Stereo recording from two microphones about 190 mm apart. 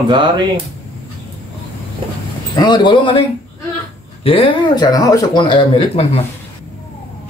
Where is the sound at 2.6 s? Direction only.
25° left (ahead or behind).